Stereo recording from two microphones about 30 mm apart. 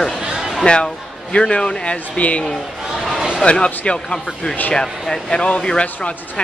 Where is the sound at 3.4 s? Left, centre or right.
Left.